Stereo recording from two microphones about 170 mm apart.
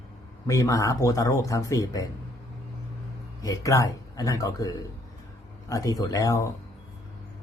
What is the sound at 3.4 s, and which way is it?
Speech, 20° left (ahead or behind).